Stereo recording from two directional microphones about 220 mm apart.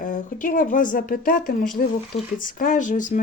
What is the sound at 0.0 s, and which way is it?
Speech, 40° left (ahead or behind).